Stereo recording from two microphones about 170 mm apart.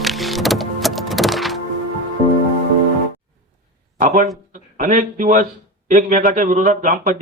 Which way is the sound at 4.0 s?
45° right (ahead or behind).